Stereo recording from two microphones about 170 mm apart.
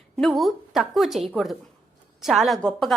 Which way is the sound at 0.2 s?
Centre (ahead or behind).